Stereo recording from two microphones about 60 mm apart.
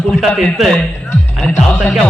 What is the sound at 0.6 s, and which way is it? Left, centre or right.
A man's voice, centre.